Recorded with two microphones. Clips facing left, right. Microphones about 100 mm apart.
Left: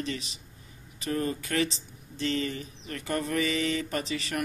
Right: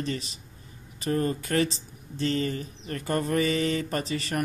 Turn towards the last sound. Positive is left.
turn(degrees=-40)  # may be behind; listen again after turning